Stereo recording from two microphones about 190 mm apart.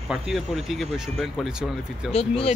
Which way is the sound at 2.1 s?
30° left (ahead or behind).